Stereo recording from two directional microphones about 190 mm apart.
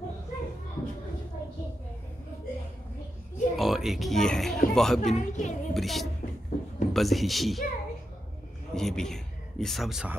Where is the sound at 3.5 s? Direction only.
Centre (ahead or behind).